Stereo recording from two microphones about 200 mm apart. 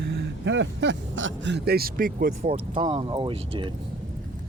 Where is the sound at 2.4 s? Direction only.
30° right (ahead or behind).